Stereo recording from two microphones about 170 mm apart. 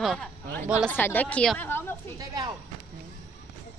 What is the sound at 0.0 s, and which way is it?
Speech, centre (ahead or behind).